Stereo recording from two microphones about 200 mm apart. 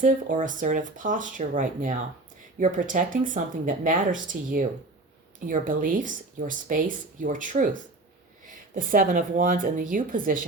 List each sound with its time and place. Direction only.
0.0 s speech: 40° right (ahead or behind)